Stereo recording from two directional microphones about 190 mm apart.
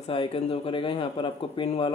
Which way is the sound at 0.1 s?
30° left (ahead or behind).